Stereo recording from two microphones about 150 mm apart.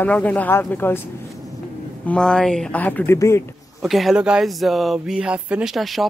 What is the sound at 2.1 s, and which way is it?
Speech, 5° left (ahead or behind).